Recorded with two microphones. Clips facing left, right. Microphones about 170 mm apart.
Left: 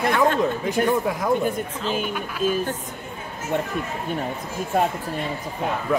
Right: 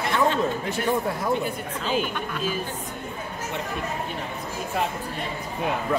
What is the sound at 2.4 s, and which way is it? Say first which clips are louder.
Speech: left 8 dB; 45° left (ahead or behind).